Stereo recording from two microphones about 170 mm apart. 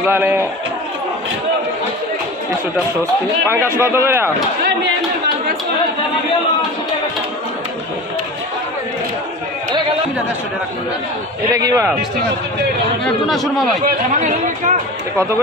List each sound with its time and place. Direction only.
0.0 s speech: 10° right (ahead or behind)
3.8 s speech: 15° right (ahead or behind)
11.5 s a man's voice: 20° right (ahead or behind)
13.0 s speech: centre (ahead or behind)
13.8 s speech: 50° right (ahead or behind)
15.1 s speech: 15° right (ahead or behind)